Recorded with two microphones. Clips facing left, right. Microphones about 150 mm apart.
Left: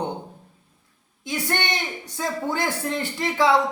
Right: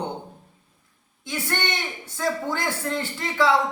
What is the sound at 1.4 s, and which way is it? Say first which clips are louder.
A man's voice: left 1 dB; 20° left (ahead or behind).